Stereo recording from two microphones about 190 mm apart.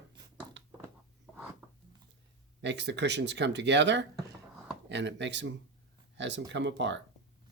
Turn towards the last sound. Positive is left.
turn(degrees=-70)  # may be behind; listen again after turning